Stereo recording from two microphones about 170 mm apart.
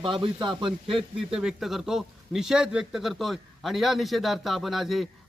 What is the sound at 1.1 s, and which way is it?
Speech, 5° right (ahead or behind).